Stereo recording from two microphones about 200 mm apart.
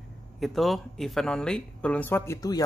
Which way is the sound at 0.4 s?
Centre (ahead or behind).